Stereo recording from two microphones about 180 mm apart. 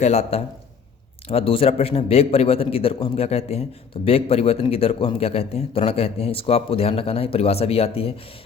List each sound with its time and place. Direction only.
0.0 s a man's voice: 35° left (ahead or behind)